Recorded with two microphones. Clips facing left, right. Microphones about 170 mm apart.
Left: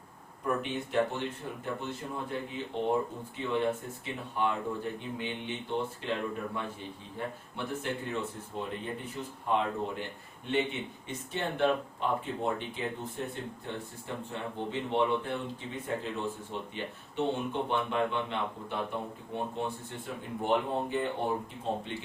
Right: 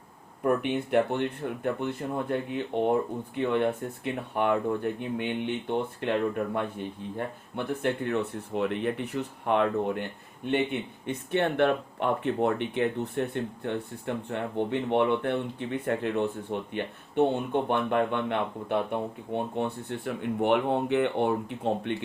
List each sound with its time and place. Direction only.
0.4 s speech: 60° right (ahead or behind)